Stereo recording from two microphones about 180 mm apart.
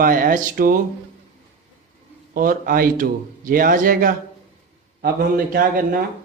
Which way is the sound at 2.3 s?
50° right (ahead or behind).